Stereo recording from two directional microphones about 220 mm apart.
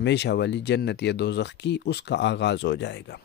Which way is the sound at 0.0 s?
50° left (ahead or behind).